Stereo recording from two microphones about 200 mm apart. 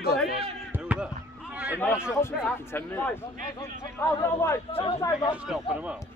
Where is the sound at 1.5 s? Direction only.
10° right (ahead or behind).